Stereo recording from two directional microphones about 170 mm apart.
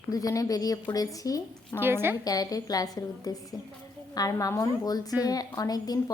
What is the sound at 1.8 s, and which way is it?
Speech, 10° right (ahead or behind).